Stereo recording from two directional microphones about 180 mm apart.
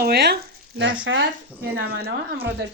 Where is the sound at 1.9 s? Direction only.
60° right (ahead or behind).